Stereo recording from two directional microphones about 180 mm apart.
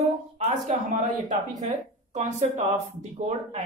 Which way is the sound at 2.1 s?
40° right (ahead or behind).